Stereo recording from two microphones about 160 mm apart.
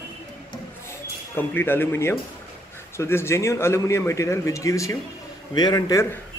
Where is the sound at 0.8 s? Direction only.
15° left (ahead or behind).